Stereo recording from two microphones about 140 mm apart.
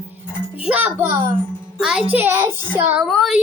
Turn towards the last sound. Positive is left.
turn(degrees=0)  # may be behind; listen again after turning